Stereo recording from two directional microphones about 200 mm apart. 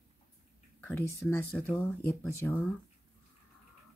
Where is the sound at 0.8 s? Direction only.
10° left (ahead or behind).